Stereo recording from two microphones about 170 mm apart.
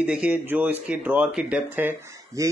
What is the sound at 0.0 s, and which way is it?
Speech, 5° right (ahead or behind).